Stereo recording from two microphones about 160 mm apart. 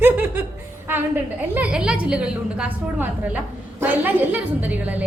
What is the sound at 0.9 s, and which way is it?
A woman's voice, 10° right (ahead or behind).